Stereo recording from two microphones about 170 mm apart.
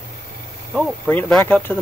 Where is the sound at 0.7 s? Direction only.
Centre (ahead or behind).